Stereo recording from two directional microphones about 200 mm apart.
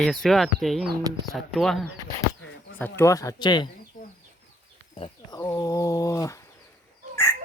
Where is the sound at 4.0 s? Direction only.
40° left (ahead or behind).